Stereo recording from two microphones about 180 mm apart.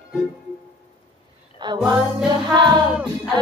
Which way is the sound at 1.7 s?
25° right (ahead or behind).